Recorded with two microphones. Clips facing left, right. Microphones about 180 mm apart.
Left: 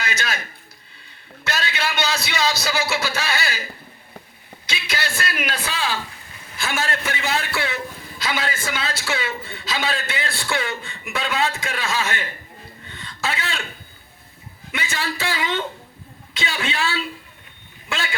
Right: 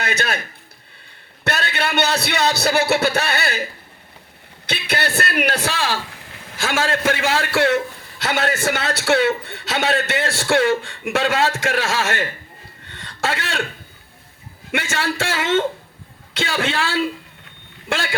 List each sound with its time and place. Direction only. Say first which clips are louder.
0.0 s a man's voice: right 4 dB; 60° right (ahead or behind)
1.5 s speech: right 3 dB; 60° right (ahead or behind)
4.6 s a man's voice: right 5 dB; 65° right (ahead or behind); by 6.0 s 80° right
6.4 s vehicle: right 4 dB; 75° right (ahead or behind)
7.1 s a man's voice: right 5 dB; 90° right
7.5 s a man's voice: right 9 dB; 75° right (ahead or behind)
10.5 s a man's voice: right 11 dB; 85° right
13.2 s a man's voice: right 3 dB; 90° right
14.7 s a man's voice: right 5 dB; 85° right
16.5 s a woman's voice: right 3 dB; 55° right (ahead or behind)